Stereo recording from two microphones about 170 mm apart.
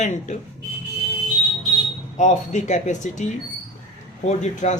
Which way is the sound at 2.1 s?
45° left (ahead or behind).